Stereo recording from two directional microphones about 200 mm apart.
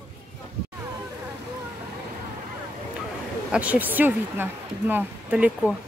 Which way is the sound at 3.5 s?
5° right (ahead or behind).